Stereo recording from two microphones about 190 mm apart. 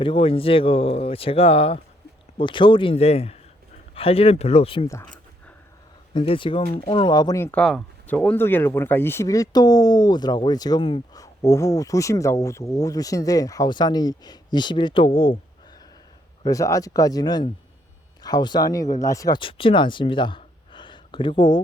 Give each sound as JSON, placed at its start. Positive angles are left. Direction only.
{"t": 0.0, "sound": "speech", "side_deg": 30}
{"t": 6.1, "sound": "speech", "side_deg": 25}
{"t": 16.4, "sound": "speech", "side_deg": 20}